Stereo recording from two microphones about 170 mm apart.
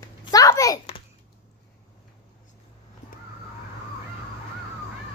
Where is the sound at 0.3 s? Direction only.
20° left (ahead or behind).